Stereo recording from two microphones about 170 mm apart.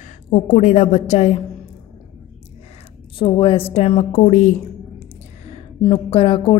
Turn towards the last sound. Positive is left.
turn(degrees=30)  # may be behind; listen again after turning